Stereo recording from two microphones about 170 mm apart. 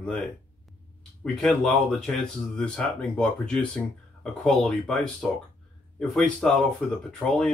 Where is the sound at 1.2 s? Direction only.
Centre (ahead or behind).